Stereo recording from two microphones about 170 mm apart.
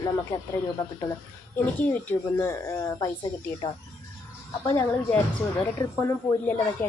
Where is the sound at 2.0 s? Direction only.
15° left (ahead or behind).